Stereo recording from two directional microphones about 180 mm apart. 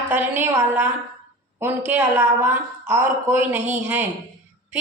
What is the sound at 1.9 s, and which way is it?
A woman's voice, 10° right (ahead or behind).